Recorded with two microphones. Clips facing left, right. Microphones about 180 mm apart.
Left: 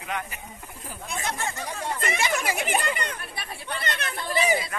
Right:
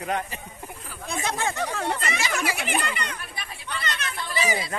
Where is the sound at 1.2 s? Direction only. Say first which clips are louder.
Right 5 dB; 90° right.